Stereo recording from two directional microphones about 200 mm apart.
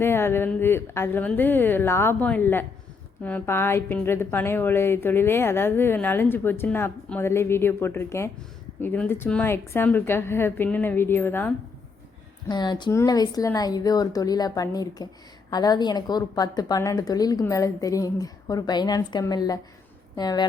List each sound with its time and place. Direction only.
0.0 s a woman's voice: 10° left (ahead or behind)
12.5 s a woman's voice: 20° left (ahead or behind)